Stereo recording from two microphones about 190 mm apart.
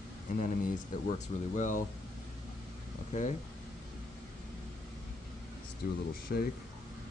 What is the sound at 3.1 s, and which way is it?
Speech, 40° left (ahead or behind).